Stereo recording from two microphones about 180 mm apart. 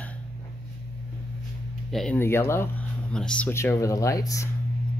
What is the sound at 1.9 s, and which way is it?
Speech, centre (ahead or behind).